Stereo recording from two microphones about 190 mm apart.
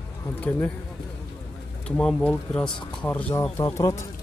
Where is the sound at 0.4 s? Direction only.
10° left (ahead or behind).